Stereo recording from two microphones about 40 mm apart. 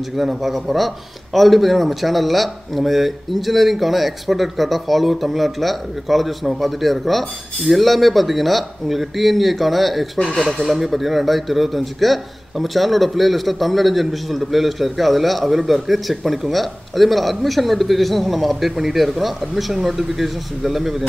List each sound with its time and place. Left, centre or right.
0.2 s a man's voice: centre